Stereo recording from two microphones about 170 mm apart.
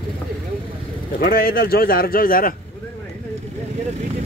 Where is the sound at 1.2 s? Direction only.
60° left (ahead or behind).